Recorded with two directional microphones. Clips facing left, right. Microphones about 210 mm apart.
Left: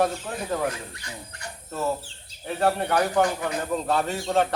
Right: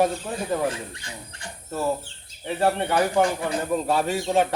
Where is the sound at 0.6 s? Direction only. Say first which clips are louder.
Right 2 dB; 30° right (ahead or behind).